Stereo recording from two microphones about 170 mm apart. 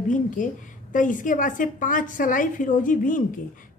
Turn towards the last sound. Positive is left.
turn(degrees=50)  # may be behind; listen again after turning